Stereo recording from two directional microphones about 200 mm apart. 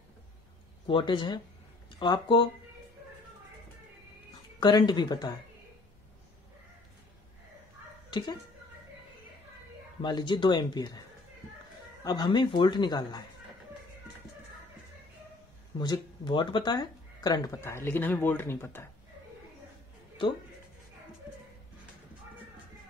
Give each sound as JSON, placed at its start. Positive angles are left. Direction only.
{"t": 0.8, "sound": "speech", "side_deg": 25}
{"t": 4.6, "sound": "speech", "side_deg": 20}
{"t": 8.1, "sound": "speech", "side_deg": 20}
{"t": 10.0, "sound": "speech", "side_deg": 20}
{"t": 12.0, "sound": "speech", "side_deg": 20}
{"t": 15.8, "sound": "speech", "side_deg": 20}